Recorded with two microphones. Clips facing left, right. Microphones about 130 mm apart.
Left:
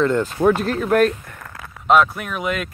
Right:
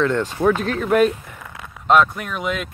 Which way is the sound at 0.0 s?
5° left (ahead or behind).